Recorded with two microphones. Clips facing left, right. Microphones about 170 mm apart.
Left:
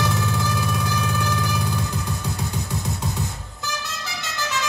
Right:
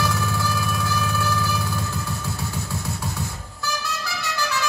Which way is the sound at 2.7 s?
20° left (ahead or behind).